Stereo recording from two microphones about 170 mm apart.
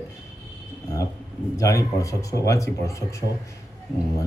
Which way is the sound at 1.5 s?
20° left (ahead or behind).